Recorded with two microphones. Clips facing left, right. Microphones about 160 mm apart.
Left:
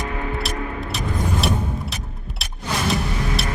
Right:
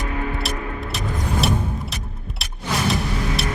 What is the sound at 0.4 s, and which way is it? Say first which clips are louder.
Music: left 1 dB; centre (ahead or behind).